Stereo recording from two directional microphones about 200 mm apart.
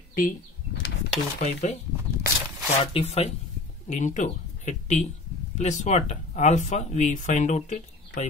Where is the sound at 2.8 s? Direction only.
30° left (ahead or behind).